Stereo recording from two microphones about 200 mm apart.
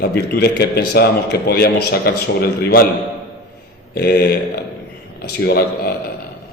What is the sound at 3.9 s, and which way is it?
Speech, 50° left (ahead or behind).